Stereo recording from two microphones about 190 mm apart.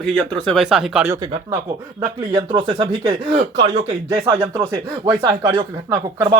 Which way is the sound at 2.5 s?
25° right (ahead or behind).